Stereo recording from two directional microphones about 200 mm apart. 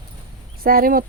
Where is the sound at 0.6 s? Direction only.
45° right (ahead or behind).